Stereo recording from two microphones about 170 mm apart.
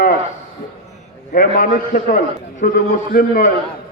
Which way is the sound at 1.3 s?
55° left (ahead or behind).